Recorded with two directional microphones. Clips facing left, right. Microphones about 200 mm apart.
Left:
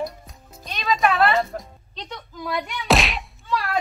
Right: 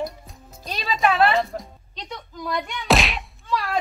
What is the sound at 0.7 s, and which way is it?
Music, 35° right (ahead or behind).